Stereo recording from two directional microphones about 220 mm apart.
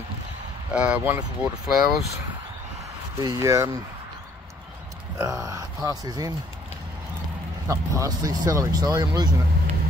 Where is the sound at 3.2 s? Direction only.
15° right (ahead or behind).